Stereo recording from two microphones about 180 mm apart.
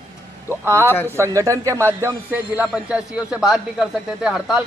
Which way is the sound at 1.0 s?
15° right (ahead or behind).